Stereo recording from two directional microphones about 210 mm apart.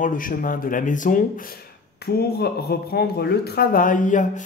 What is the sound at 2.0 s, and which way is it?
Mantra, 50° left (ahead or behind).